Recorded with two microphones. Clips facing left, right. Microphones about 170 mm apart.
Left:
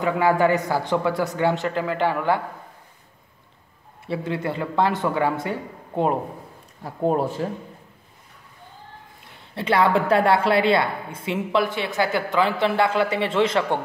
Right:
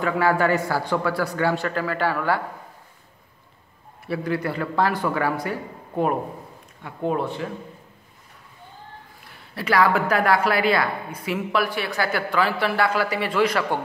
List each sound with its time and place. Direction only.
0.0 s a woman's voice: 20° left (ahead or behind)
4.0 s a woman's voice: 25° left (ahead or behind)
6.8 s speech: 40° left (ahead or behind)
9.6 s a woman's voice: 25° left (ahead or behind)